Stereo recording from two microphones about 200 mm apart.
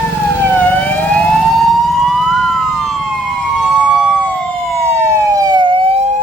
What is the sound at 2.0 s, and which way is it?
Emergency vehicle, centre (ahead or behind).